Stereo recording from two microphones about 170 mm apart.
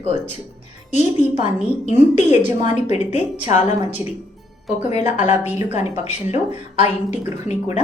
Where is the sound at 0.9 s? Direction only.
40° left (ahead or behind).